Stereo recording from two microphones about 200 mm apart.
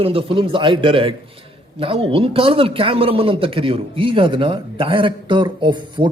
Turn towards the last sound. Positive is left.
turn(degrees=-25)  # may be behind; listen again after turning